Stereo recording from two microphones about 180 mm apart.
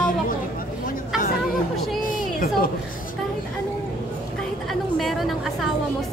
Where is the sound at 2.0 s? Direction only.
50° left (ahead or behind).